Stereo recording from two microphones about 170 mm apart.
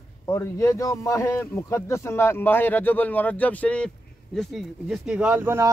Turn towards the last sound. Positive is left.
turn(degrees=-15)  # may be behind; listen again after turning